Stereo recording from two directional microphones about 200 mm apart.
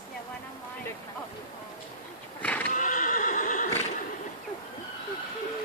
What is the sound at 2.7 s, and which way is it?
Neigh, 40° left (ahead or behind).